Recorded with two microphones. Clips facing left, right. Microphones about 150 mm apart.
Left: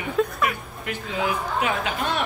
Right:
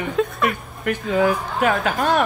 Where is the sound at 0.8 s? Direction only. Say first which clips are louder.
Right 8 dB; 45° right (ahead or behind).